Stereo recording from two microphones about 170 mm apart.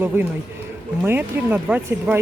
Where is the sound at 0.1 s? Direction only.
15° right (ahead or behind).